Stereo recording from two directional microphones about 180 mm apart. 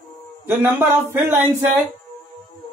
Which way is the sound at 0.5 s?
10° right (ahead or behind).